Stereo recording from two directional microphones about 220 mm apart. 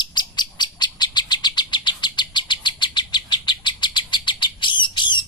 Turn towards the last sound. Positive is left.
turn(degrees=20)  # may be behind; listen again after turning